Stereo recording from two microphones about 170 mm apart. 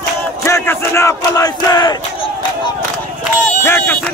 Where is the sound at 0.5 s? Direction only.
15° left (ahead or behind).